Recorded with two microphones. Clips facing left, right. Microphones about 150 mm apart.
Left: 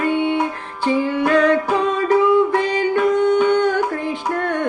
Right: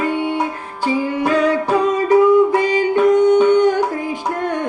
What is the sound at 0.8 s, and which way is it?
Music, 10° right (ahead or behind).